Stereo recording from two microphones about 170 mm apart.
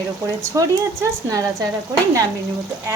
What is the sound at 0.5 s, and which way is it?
Speech, 15° right (ahead or behind).